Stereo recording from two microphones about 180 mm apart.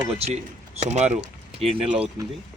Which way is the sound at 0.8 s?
40° right (ahead or behind).